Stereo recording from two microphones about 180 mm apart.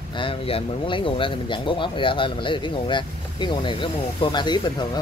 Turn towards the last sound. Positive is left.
turn(degrees=25)  # may be behind; listen again after turning